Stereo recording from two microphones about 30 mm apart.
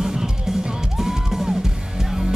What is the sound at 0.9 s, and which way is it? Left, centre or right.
Music, centre.